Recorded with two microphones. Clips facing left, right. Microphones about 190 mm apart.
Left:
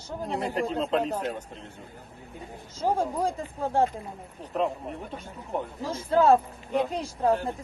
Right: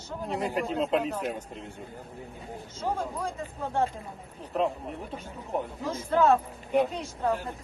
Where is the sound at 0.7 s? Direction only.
5° right (ahead or behind).